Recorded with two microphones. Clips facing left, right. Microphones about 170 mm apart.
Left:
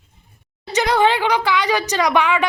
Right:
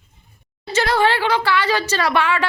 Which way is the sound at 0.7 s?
15° left (ahead or behind).